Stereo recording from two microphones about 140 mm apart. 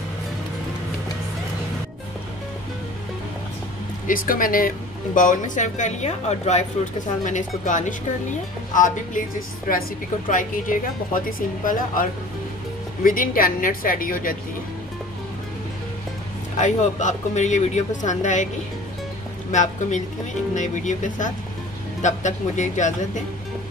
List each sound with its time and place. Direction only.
4.1 s speech: 85° left; by 6.6 s 50° left (ahead or behind)
7.2 s speech: 65° left (ahead or behind)
9.7 s a woman's voice: 80° left
16.5 s speech: 60° left (ahead or behind)
19.5 s speech: 60° left (ahead or behind)